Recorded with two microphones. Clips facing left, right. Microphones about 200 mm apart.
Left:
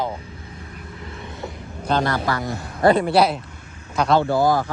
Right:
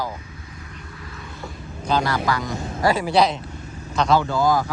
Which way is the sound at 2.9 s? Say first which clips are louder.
Left 2 dB; centre (ahead or behind).